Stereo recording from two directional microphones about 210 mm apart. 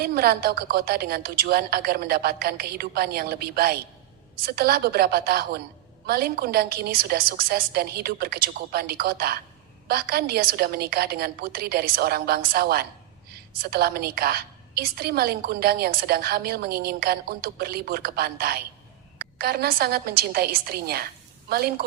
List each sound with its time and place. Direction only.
0.0 s a woman's voice: 45° right (ahead or behind)